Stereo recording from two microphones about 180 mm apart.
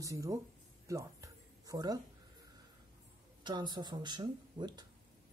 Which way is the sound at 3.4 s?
25° right (ahead or behind).